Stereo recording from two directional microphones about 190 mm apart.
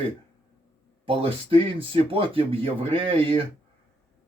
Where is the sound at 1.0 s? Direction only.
30° right (ahead or behind).